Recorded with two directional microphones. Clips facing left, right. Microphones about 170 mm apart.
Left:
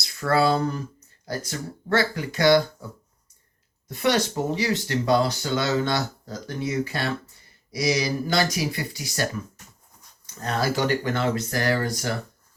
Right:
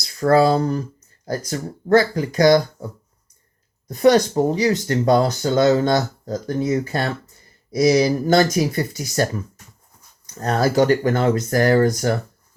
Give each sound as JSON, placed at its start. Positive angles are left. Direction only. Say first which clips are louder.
{"t": 0.0, "sound": "speech", "louder": "right 6 dB", "side_deg": -40}
{"t": 3.8, "sound": "speech", "louder": "right 8 dB", "side_deg": -40}